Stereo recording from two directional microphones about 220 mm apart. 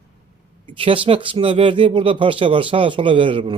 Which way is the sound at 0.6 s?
25° right (ahead or behind).